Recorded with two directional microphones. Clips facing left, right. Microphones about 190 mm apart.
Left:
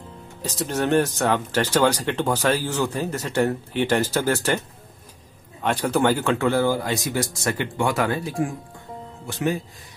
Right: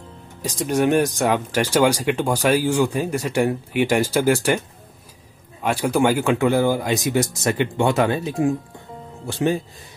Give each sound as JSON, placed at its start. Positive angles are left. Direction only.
{"t": 0.4, "sound": "speech", "side_deg": -10}
{"t": 5.6, "sound": "speech", "side_deg": -10}